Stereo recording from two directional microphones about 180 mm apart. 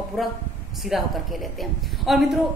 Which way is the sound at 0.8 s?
Centre (ahead or behind).